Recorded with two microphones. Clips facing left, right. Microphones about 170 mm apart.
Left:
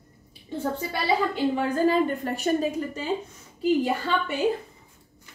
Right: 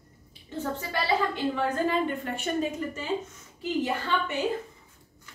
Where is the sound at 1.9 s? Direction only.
40° left (ahead or behind).